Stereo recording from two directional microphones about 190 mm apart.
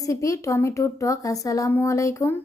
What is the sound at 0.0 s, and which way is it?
Speech, 15° left (ahead or behind).